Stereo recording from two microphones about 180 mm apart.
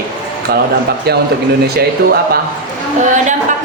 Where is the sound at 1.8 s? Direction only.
60° right (ahead or behind).